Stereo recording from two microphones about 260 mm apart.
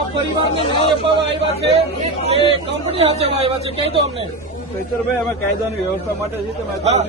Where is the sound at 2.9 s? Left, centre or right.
Right.